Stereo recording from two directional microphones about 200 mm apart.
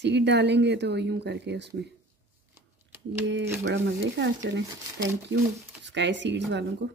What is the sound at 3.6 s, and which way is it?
A woman's voice, 60° right (ahead or behind).